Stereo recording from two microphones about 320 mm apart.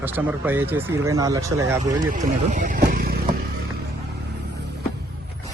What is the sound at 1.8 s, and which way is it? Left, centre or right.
Speech, right.